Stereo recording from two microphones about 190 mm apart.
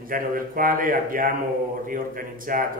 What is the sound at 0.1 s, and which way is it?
A man's voice, 45° right (ahead or behind).